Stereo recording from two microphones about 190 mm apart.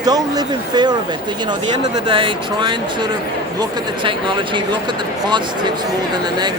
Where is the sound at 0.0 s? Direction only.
20° right (ahead or behind).